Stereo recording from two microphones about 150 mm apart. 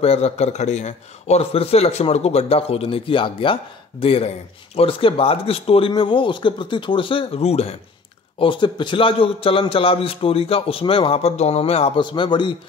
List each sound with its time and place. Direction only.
0.0 s a man's voice: 45° left (ahead or behind)
8.4 s a man's voice: 30° left (ahead or behind)
12.0 s a man's voice: 30° left (ahead or behind)